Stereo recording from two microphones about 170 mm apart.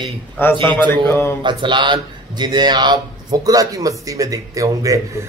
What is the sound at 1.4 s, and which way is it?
Speech, 25° right (ahead or behind).